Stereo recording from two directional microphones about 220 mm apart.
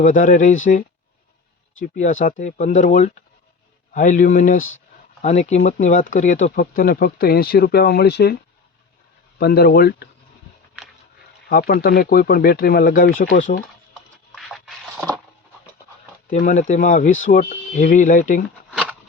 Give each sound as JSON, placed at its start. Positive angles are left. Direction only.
{"t": 0.0, "sound": "speech", "side_deg": 35}
{"t": 9.4, "sound": "speech", "side_deg": 45}
{"t": 11.4, "sound": "speech", "side_deg": 45}
{"t": 14.3, "sound": "a sound", "side_deg": 0}
{"t": 16.2, "sound": "speech", "side_deg": 35}
{"t": 18.7, "sound": "a sound", "side_deg": -5}